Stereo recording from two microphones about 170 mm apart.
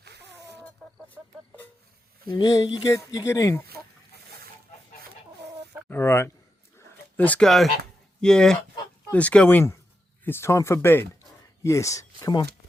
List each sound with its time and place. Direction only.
0.0 s a sound: 80° right
1.2 s music: centre (ahead or behind)
2.3 s speech: 25° left (ahead or behind)
5.9 s speech: 15° left (ahead or behind)
6.7 s a sound: 10° left (ahead or behind)
8.2 s speech: 5° left (ahead or behind); by 12.5 s 20° left (ahead or behind)